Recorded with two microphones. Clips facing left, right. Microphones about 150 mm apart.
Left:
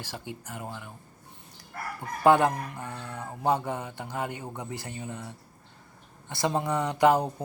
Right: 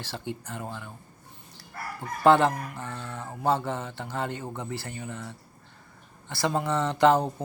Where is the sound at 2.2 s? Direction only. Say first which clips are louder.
Right 1 dB; 15° left (ahead or behind).